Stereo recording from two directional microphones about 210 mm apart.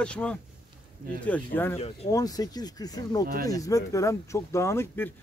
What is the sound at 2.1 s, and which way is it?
Speech, 15° left (ahead or behind).